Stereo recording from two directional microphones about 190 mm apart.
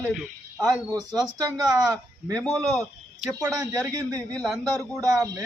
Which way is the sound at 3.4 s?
20° right (ahead or behind).